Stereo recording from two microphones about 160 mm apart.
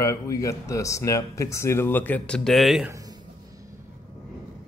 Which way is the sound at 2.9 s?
20° right (ahead or behind).